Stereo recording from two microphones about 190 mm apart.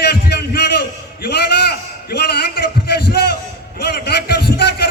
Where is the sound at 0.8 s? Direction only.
55° left (ahead or behind).